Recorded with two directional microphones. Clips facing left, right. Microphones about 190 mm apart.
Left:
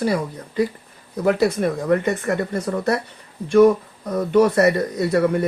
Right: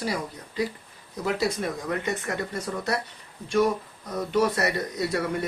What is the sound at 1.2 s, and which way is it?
Speech, 55° left (ahead or behind).